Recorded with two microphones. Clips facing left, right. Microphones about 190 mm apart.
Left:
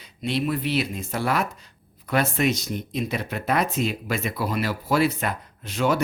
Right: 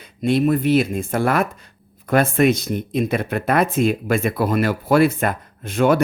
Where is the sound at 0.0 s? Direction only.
50° right (ahead or behind).